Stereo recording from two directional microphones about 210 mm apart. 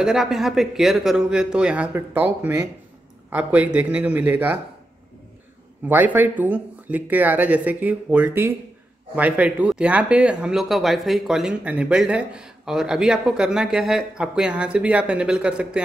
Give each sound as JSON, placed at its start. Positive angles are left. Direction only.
{"t": 0.0, "sound": "speech", "side_deg": 0}
{"t": 5.9, "sound": "speech", "side_deg": -10}